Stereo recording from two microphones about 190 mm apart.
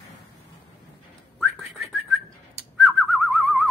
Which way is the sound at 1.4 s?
Centre (ahead or behind).